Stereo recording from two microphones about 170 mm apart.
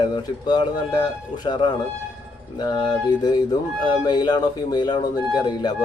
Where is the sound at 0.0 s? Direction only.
25° left (ahead or behind).